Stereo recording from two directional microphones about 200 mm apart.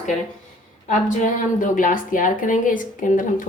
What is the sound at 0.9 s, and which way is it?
A woman's voice, 40° left (ahead or behind).